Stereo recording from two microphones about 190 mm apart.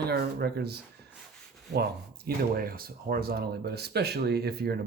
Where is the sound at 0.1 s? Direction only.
55° right (ahead or behind).